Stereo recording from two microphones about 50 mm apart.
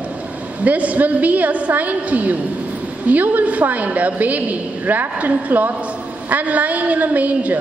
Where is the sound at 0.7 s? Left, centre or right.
Right.